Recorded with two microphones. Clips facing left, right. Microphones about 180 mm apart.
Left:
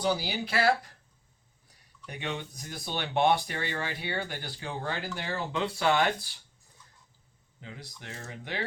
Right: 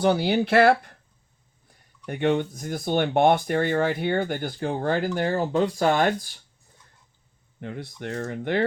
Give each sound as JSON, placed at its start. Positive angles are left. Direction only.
{"t": 0.0, "sound": "speech", "side_deg": -60}
{"t": 2.0, "sound": "speech", "side_deg": -55}
{"t": 7.6, "sound": "speech", "side_deg": -55}